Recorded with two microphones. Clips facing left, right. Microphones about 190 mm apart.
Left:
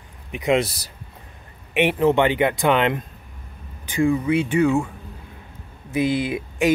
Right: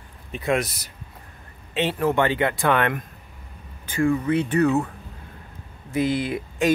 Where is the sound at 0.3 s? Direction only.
20° left (ahead or behind).